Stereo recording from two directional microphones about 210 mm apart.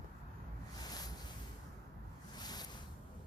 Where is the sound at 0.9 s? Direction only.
20° left (ahead or behind).